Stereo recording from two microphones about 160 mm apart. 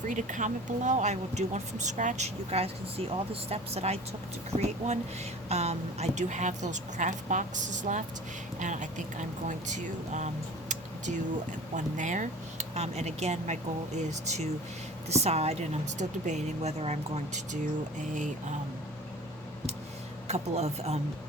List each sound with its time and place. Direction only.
0.1 s speech: 50° right (ahead or behind)
20.2 s speech: 40° right (ahead or behind)